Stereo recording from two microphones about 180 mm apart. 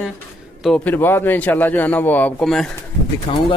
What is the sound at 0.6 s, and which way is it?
A man's voice, 5° left (ahead or behind).